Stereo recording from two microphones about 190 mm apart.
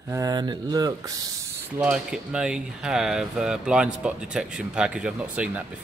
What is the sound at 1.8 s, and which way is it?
Speech, 5° right (ahead or behind).